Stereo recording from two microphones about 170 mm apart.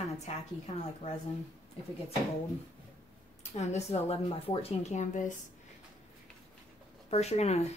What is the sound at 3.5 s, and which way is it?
A woman's voice, 40° left (ahead or behind).